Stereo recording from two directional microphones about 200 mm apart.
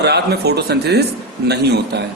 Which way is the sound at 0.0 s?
55° right (ahead or behind).